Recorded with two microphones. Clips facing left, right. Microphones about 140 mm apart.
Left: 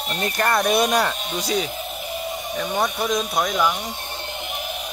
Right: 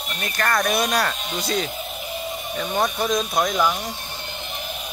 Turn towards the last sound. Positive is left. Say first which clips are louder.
# right 1 dB
turn(degrees=10)  # may be behind; listen again after turning